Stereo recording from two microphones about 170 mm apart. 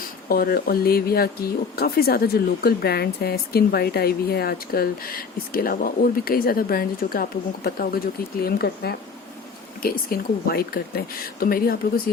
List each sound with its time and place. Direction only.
0.3 s speech: 60° left (ahead or behind)